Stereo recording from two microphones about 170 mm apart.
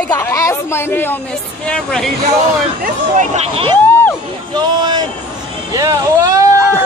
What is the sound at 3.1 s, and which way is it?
Speech, 40° right (ahead or behind).